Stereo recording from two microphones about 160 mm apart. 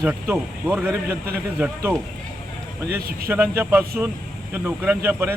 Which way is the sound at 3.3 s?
15° right (ahead or behind).